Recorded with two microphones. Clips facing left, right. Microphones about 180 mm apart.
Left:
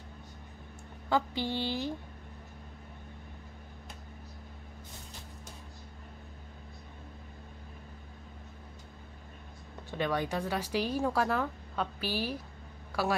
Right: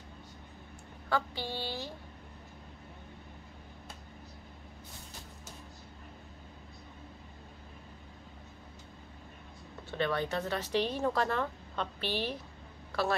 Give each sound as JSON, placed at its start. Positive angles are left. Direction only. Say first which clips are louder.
{"t": 1.0, "sound": "speech", "louder": "left 3 dB", "side_deg": 20}
{"t": 9.8, "sound": "a woman's voice", "louder": "even", "side_deg": 15}